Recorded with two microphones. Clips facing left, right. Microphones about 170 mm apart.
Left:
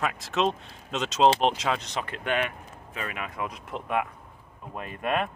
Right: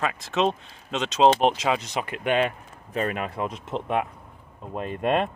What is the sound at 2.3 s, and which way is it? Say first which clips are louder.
Speech: right 5 dB; 30° right (ahead or behind).